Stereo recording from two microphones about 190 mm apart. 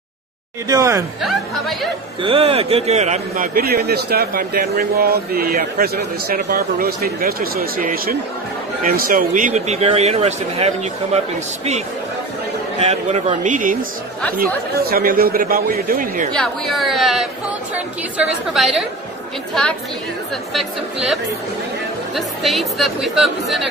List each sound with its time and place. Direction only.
0.7 s speech: 15° right (ahead or behind)
1.2 s speech: centre (ahead or behind)
2.2 s a man's voice: 30° right (ahead or behind)
12.8 s a man's voice: 35° right (ahead or behind)
16.3 s speech: centre (ahead or behind)
20.5 s speech: centre (ahead or behind)